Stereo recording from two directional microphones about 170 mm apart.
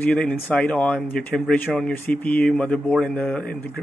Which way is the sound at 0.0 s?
5° left (ahead or behind).